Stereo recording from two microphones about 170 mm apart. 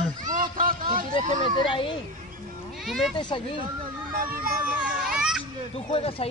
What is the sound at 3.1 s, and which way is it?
Speech, 30° left (ahead or behind).